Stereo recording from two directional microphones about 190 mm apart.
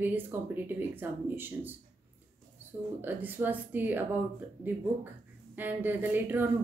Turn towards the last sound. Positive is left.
turn(degrees=-10)  # may be behind; listen again after turning